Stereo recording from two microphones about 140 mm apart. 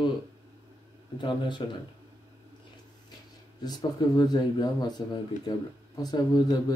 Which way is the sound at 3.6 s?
30° left (ahead or behind).